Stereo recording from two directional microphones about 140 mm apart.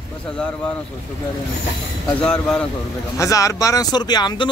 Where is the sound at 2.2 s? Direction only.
5° left (ahead or behind).